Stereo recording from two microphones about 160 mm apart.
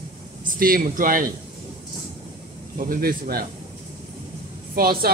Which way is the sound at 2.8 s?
65° right (ahead or behind).